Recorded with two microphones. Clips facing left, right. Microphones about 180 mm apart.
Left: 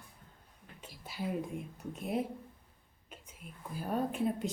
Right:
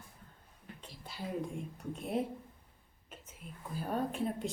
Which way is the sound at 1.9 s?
Centre (ahead or behind).